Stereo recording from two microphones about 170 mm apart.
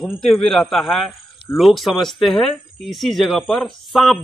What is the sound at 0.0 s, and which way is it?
Speech, 5° left (ahead or behind).